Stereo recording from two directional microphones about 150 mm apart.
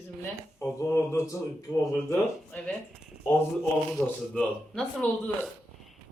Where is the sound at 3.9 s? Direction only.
5° left (ahead or behind).